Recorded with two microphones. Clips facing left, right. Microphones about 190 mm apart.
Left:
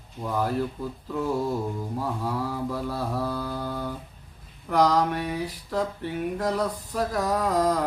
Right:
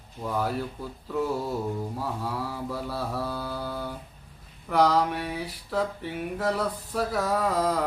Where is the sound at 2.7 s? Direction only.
5° right (ahead or behind).